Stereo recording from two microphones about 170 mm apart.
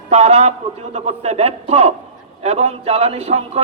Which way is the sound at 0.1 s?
35° right (ahead or behind).